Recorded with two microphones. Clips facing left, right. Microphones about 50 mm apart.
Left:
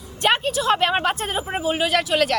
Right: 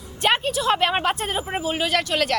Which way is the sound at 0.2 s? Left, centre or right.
Centre.